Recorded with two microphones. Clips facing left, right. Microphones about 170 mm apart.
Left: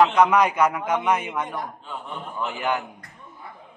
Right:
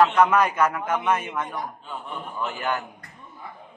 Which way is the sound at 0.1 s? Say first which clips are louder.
Left 1 dB; 15° left (ahead or behind).